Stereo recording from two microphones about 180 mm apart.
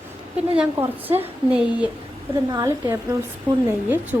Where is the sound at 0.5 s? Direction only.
10° right (ahead or behind).